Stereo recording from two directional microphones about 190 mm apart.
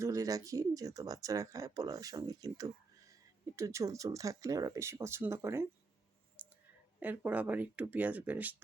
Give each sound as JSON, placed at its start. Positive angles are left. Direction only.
{"t": 0.0, "sound": "speech", "side_deg": -15}
{"t": 6.4, "sound": "clicking", "side_deg": -10}
{"t": 7.0, "sound": "speech", "side_deg": -10}